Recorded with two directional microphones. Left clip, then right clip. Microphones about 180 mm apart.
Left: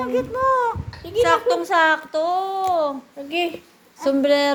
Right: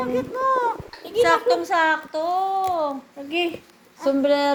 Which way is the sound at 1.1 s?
Centre (ahead or behind).